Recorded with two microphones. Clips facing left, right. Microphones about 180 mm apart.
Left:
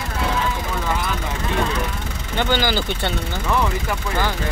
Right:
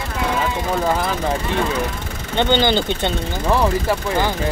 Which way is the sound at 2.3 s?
25° right (ahead or behind).